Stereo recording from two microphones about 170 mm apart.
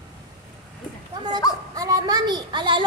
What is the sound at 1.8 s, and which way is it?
A woman's voice, 20° right (ahead or behind).